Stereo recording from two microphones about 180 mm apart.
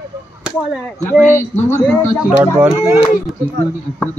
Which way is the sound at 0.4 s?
5° right (ahead or behind).